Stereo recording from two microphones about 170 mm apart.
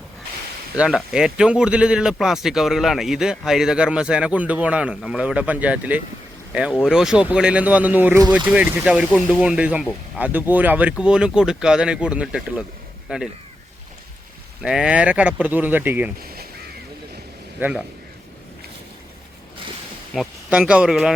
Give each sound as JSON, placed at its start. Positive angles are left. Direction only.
{"t": 0.8, "sound": "speech", "side_deg": -5}
{"t": 14.6, "sound": "speech", "side_deg": -5}
{"t": 16.2, "sound": "a sound", "side_deg": -65}
{"t": 17.6, "sound": "speech", "side_deg": -5}
{"t": 20.1, "sound": "speech", "side_deg": -5}